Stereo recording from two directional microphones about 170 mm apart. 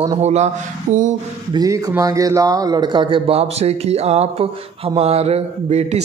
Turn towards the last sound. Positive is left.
turn(degrees=-40)  # may be behind; listen again after turning